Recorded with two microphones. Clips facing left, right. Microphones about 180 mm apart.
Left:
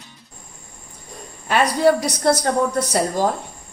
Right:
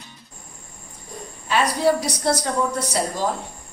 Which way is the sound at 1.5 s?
55° left (ahead or behind).